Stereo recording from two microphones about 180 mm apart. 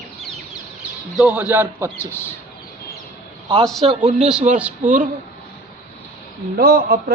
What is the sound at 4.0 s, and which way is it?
A man's voice, 40° right (ahead or behind).